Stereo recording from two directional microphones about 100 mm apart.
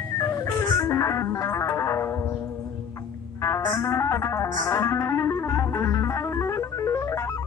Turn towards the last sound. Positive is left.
turn(degrees=30)  # may be behind; listen again after turning